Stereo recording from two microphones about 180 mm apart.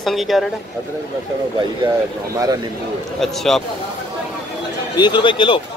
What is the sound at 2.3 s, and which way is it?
Speech, 20° right (ahead or behind).